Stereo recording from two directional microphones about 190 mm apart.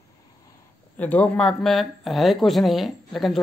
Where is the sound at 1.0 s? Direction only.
10° left (ahead or behind).